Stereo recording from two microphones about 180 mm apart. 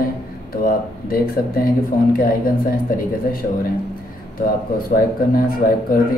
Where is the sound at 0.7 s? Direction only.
55° left (ahead or behind).